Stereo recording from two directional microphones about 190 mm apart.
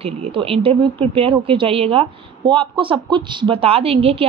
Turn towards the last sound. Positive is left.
turn(degrees=-30)  # may be behind; listen again after turning